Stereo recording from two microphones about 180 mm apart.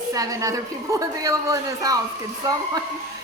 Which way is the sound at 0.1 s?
20° right (ahead or behind).